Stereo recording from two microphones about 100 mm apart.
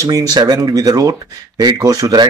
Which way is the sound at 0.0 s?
40° right (ahead or behind).